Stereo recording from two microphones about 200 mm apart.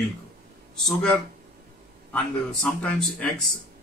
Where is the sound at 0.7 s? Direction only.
Centre (ahead or behind).